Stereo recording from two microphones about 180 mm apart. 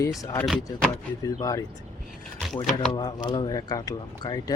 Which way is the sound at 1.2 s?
20° left (ahead or behind).